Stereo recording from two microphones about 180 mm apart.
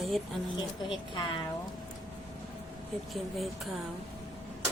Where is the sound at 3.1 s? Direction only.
Centre (ahead or behind).